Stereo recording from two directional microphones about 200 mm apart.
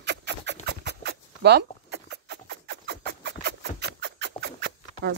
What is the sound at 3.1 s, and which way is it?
Rodents, 55° right (ahead or behind).